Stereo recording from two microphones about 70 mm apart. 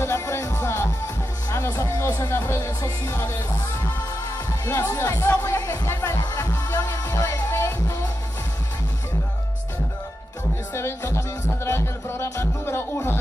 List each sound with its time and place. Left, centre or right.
0.0 s music: left
4.7 s music: left
5.4 s music: left
10.7 s music: left